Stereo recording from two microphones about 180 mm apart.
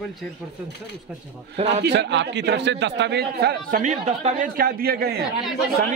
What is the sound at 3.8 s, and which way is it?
Speech, 40° right (ahead or behind).